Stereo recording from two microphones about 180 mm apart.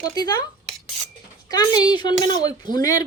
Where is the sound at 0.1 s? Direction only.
20° left (ahead or behind).